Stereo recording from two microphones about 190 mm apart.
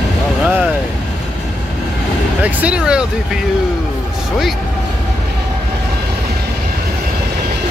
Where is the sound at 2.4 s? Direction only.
5° right (ahead or behind).